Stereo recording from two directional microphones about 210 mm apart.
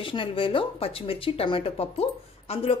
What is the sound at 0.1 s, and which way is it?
Speech, 25° left (ahead or behind).